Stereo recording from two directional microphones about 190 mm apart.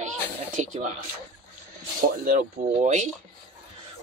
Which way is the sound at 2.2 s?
40° right (ahead or behind).